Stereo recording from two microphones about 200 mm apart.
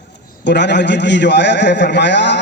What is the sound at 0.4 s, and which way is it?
A man's voice, 60° left (ahead or behind).